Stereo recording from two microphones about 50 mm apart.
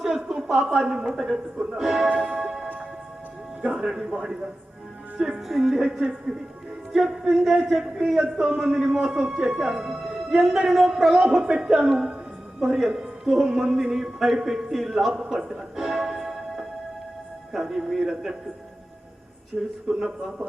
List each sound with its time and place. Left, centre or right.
0.0 s a sound: centre
0.6 s a woman's voice: right
1.0 s a man's voice: centre
2.2 s music: centre
3.6 s a man's voice: centre
5.5 s a man's voice: centre
11.2 s a man's voice: centre
15.3 s music: centre
17.5 s a man's voice: centre
19.5 s a man's voice: centre
19.9 s a man's voice: centre